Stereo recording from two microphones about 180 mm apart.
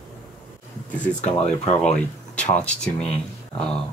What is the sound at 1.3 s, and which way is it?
Speech, 35° left (ahead or behind).